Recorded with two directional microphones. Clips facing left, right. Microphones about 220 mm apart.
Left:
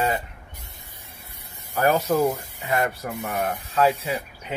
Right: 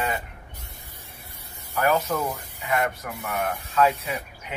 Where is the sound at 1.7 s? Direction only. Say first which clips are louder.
Left 3 dB; 35° left (ahead or behind).